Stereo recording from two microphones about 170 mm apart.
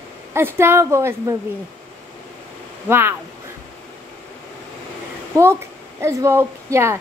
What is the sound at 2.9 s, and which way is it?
Speech, 15° right (ahead or behind).